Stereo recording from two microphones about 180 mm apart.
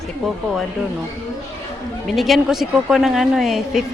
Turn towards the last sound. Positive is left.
turn(degrees=0)  # may be behind; listen again after turning